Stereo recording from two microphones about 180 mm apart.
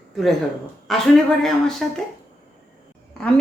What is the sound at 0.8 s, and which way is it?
Speech, centre (ahead or behind).